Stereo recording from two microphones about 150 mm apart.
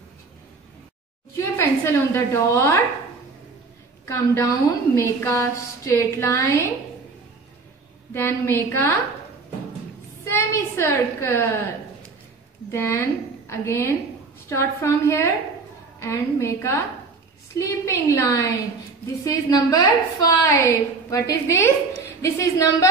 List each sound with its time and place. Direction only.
1.3 s speech: 20° left (ahead or behind)
4.0 s a woman's voice: 20° left (ahead or behind)
8.1 s a woman's voice: 15° left (ahead or behind)
10.3 s a woman's voice: 20° left (ahead or behind)
12.7 s a woman's voice: 20° left (ahead or behind)